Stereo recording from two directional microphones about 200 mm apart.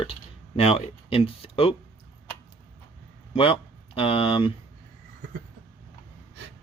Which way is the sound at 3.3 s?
30° left (ahead or behind).